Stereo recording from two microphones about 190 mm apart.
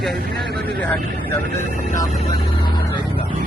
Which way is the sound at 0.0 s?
Centre (ahead or behind).